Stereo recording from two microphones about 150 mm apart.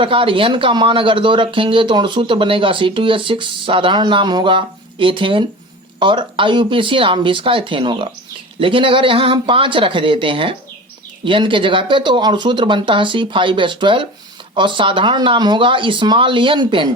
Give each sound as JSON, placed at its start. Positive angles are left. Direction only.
{"t": 0.0, "sound": "speech", "side_deg": -35}